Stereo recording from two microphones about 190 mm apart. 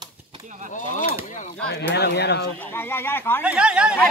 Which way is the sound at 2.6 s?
10° left (ahead or behind).